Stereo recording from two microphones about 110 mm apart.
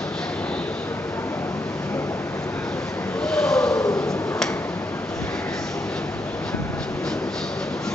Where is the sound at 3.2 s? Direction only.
5° left (ahead or behind).